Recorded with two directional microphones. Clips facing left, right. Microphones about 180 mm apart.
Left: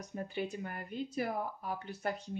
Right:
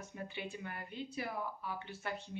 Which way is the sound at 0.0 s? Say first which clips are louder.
Left 6 dB; 40° left (ahead or behind).